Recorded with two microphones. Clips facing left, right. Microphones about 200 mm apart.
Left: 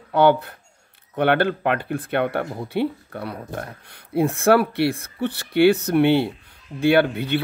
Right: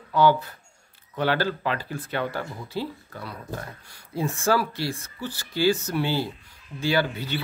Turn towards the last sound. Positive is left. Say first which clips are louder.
# left 7 dB
turn(degrees=60)  # may be behind; listen again after turning